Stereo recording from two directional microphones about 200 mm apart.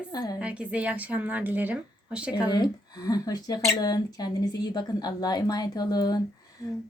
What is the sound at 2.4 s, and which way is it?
A woman's voice, 20° left (ahead or behind).